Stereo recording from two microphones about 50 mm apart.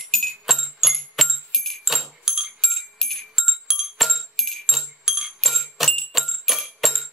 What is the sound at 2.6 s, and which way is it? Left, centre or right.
Music, centre.